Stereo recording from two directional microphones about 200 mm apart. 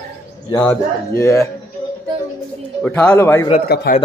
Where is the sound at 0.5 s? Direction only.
15° left (ahead or behind).